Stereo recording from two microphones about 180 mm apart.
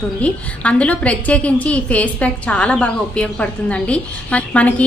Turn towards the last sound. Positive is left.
turn(degrees=5)  # may be behind; listen again after turning